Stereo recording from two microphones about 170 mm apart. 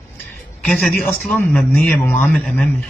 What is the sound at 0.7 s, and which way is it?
Speech, centre (ahead or behind).